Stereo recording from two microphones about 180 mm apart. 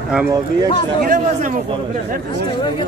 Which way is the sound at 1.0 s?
50° right (ahead or behind).